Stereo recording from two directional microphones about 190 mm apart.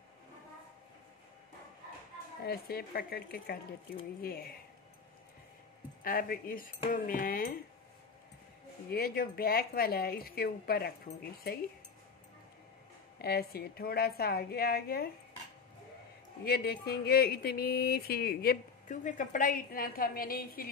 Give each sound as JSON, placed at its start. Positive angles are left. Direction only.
{"t": 2.4, "sound": "speech", "side_deg": 55}
{"t": 6.0, "sound": "speech", "side_deg": 50}
{"t": 8.9, "sound": "a woman's voice", "side_deg": 55}
{"t": 13.2, "sound": "a woman's voice", "side_deg": 55}
{"t": 16.4, "sound": "speech", "side_deg": 55}